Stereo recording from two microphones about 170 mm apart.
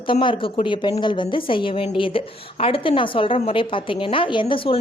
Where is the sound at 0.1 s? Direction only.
30° left (ahead or behind).